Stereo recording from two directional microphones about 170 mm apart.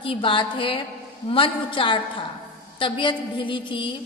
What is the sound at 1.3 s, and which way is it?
A woman's voice, 30° left (ahead or behind).